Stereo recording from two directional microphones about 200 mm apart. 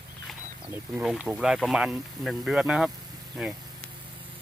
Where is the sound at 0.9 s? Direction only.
5° right (ahead or behind).